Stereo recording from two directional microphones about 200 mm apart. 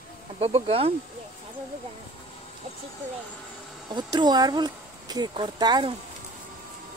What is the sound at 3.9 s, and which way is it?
Speech, 20° right (ahead or behind).